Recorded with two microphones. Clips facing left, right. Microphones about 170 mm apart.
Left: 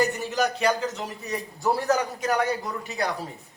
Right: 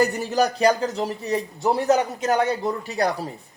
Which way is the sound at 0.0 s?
35° right (ahead or behind).